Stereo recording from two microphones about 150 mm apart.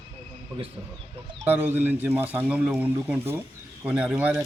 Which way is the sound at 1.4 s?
10° right (ahead or behind).